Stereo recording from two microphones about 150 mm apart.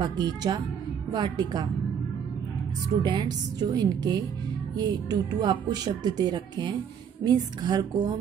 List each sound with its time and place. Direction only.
0.0 s speech: 30° right (ahead or behind)
3.0 s speech: 30° right (ahead or behind)